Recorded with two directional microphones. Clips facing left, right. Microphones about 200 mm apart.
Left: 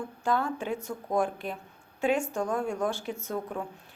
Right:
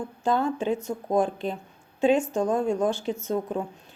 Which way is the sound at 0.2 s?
20° right (ahead or behind).